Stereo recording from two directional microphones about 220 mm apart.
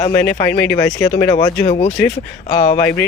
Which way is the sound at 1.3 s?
25° left (ahead or behind).